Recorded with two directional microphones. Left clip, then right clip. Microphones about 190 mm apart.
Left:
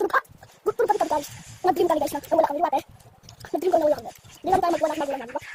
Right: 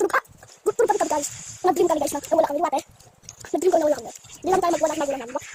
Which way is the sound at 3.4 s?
20° right (ahead or behind).